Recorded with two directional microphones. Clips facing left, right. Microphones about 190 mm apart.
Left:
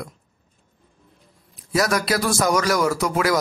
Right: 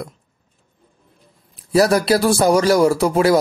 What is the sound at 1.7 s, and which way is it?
A man's voice, 30° right (ahead or behind).